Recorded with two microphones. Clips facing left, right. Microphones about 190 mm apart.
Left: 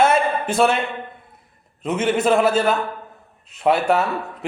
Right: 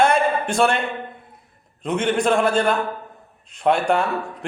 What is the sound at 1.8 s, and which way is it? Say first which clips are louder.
A man's voice: left 1 dB; 5° left (ahead or behind).